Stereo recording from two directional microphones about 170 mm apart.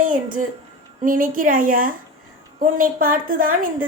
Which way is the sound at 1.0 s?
55° right (ahead or behind).